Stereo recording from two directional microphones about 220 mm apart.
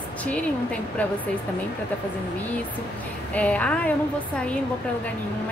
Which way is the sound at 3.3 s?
5° left (ahead or behind).